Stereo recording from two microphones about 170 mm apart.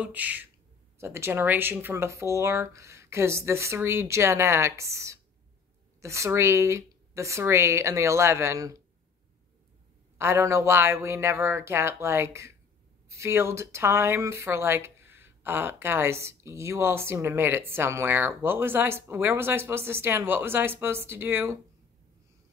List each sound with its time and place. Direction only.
0.0 s speech: 10° right (ahead or behind)
10.1 s speech: 15° right (ahead or behind)